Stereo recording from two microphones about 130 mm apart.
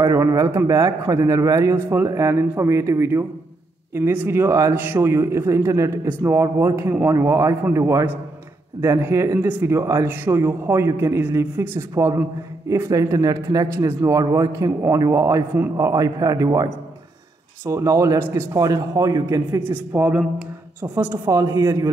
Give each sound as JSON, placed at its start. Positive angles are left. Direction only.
{"t": 0.0, "sound": "a man's voice", "side_deg": -25}
{"t": 19.9, "sound": "speech", "side_deg": -15}